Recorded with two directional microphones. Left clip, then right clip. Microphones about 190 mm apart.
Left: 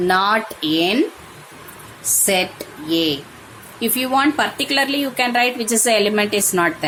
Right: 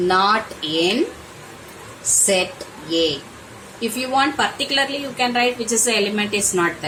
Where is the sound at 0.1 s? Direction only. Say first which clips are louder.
Even; 40° left (ahead or behind).